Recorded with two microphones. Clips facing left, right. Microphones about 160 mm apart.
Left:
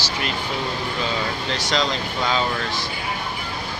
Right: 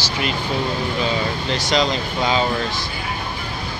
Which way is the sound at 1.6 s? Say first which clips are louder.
Right 4 dB; 15° right (ahead or behind).